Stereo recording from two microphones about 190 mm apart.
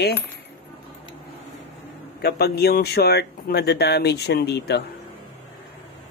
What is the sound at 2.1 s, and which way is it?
Speech, 60° left (ahead or behind).